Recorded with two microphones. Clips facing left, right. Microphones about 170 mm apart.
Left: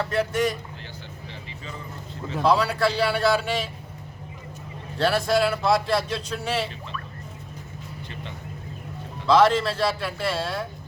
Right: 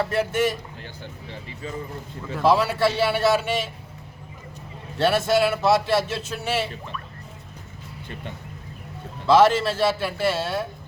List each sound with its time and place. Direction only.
0.0 s speech: 5° right (ahead or behind)
2.4 s speech: 5° right (ahead or behind)
4.9 s speech: centre (ahead or behind)
9.2 s speech: 5° right (ahead or behind)